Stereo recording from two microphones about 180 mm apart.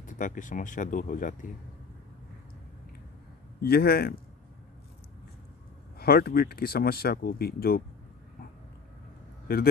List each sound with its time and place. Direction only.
0.0 s speech: 45° left (ahead or behind)
3.6 s speech: 60° left (ahead or behind)
5.9 s speech: 60° left (ahead or behind)
9.5 s speech: 55° left (ahead or behind)